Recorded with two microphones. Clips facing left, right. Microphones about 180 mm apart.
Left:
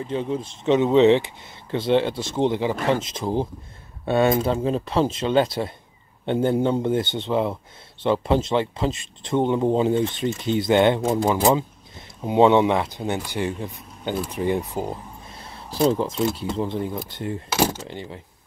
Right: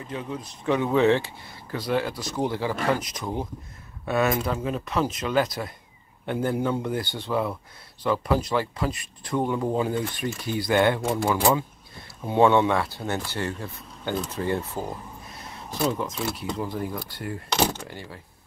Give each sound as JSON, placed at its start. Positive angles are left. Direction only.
{"t": 0.1, "sound": "speech", "side_deg": 30}
{"t": 15.2, "sound": "a sound", "side_deg": 30}
{"t": 16.5, "sound": "speech", "side_deg": 25}
{"t": 17.5, "sound": "speech", "side_deg": 5}
{"t": 17.8, "sound": "speech", "side_deg": 20}